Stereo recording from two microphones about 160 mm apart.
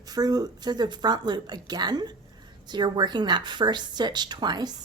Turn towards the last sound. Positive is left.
turn(degrees=-25)  # may be behind; listen again after turning